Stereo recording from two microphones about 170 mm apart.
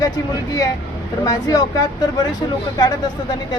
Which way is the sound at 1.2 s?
20° left (ahead or behind).